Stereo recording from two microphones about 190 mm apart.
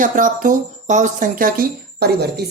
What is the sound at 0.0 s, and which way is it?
Speech, 45° right (ahead or behind).